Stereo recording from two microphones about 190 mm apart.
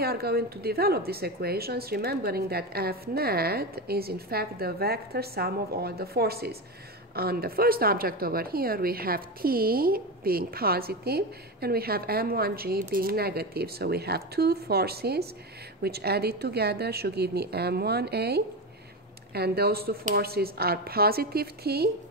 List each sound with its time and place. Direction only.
0.0 s a woman's voice: 55° right (ahead or behind)